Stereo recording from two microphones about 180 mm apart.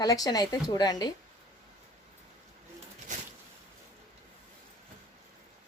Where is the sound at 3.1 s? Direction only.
45° right (ahead or behind).